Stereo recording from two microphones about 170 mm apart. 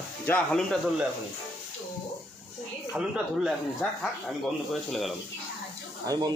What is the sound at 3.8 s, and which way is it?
Speech, 10° left (ahead or behind).